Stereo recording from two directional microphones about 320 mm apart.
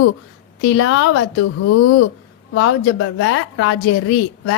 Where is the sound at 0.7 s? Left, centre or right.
Left.